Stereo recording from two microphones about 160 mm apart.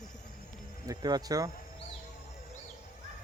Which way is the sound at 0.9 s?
25° right (ahead or behind).